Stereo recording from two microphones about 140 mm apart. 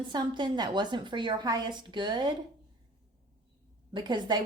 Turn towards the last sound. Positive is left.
turn(degrees=-30)  # may be behind; listen again after turning